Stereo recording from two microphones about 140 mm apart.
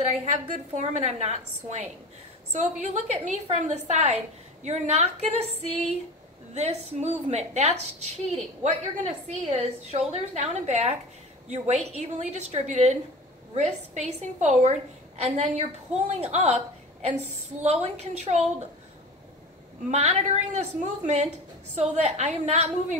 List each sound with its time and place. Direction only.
0.7 s a woman's voice: 50° right (ahead or behind)
2.5 s a woman's voice: 55° right (ahead or behind)
19.9 s a woman's voice: 50° right (ahead or behind)